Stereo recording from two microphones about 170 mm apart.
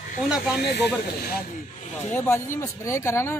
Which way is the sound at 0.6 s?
70° left (ahead or behind).